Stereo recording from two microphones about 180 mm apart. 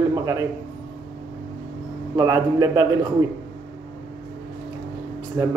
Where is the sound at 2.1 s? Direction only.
20° right (ahead or behind).